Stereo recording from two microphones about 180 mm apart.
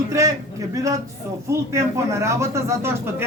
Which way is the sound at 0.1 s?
15° right (ahead or behind).